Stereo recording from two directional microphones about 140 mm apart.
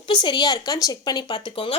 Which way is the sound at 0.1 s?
35° left (ahead or behind).